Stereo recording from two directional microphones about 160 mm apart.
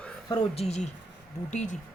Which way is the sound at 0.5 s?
40° left (ahead or behind).